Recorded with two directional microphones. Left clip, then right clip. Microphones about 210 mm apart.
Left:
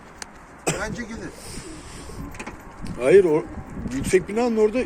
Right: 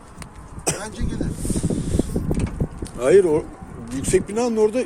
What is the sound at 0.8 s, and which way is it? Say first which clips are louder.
Speech: left 3 dB; 25° right (ahead or behind).